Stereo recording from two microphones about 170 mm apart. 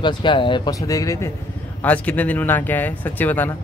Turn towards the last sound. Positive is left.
turn(degrees=10)  # may be behind; listen again after turning